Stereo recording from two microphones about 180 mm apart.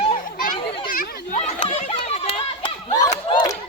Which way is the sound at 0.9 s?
50° left (ahead or behind).